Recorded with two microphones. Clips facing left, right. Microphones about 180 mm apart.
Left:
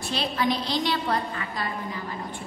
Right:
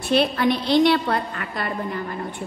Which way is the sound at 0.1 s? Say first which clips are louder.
Right 7 dB; 60° right (ahead or behind).